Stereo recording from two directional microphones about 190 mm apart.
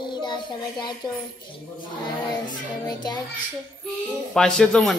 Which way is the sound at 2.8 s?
20° left (ahead or behind).